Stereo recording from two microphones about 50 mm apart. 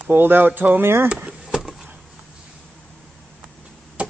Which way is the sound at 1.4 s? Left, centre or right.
Centre.